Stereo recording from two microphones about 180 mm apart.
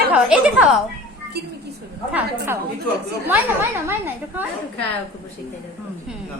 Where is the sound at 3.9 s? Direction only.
10° right (ahead or behind).